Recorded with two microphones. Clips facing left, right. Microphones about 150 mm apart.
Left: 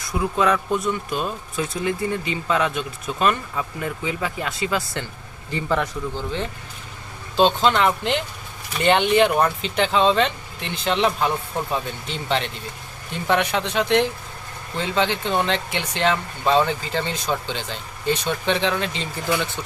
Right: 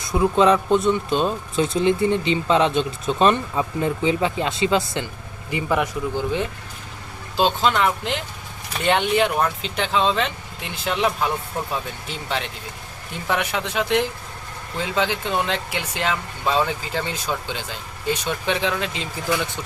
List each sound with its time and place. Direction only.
0.0 s speech: 25° right (ahead or behind)
5.5 s speech: 15° right (ahead or behind)